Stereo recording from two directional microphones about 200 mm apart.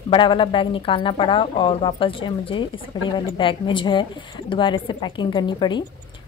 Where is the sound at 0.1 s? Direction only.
25° left (ahead or behind).